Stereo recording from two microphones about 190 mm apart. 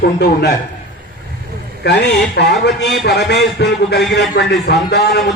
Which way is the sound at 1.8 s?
65° left (ahead or behind).